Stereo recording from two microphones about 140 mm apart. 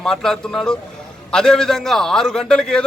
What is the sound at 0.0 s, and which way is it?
A man's voice, 5° left (ahead or behind).